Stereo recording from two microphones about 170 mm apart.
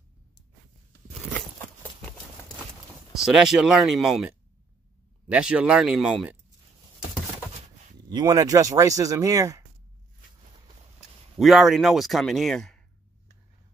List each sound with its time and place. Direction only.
1.8 s clip-clop: 10° left (ahead or behind)
3.2 s speech: 5° right (ahead or behind)
5.3 s speech: 5° right (ahead or behind)
8.1 s speech: 20° right (ahead or behind)
11.3 s speech: centre (ahead or behind)